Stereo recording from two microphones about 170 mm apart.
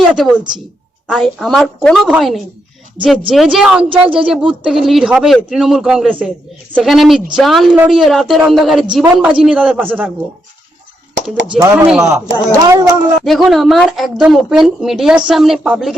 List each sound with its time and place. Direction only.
0.0 s a woman's voice: centre (ahead or behind)
3.8 s a woman's voice: 30° right (ahead or behind)
4.3 s a woman's voice: 5° right (ahead or behind)
11.6 s speech: 15° right (ahead or behind)
12.1 s speech: 20° right (ahead or behind)
13.2 s a woman's voice: centre (ahead or behind)